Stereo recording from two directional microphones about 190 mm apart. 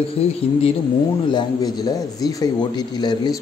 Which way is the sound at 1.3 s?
20° left (ahead or behind).